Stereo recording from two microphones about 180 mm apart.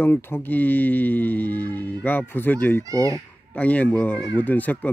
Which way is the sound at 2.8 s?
20° right (ahead or behind).